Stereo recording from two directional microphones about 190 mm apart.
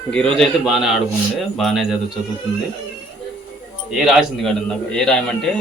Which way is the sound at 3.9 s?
Centre (ahead or behind).